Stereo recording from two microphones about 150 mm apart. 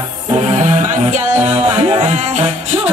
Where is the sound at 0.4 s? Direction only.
50° right (ahead or behind).